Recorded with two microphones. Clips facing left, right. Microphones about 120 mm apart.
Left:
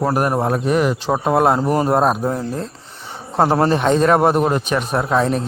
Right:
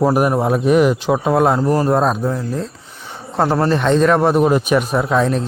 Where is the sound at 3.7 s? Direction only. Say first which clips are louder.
Right 1 dB; 5° left (ahead or behind).